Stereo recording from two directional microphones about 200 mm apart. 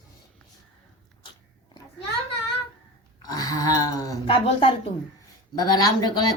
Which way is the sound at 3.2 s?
20° left (ahead or behind).